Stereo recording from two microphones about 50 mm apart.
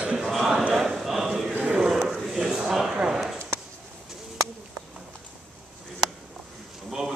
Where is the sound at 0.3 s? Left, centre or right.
Centre.